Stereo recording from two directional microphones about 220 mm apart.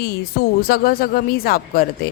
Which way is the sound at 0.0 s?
45° left (ahead or behind).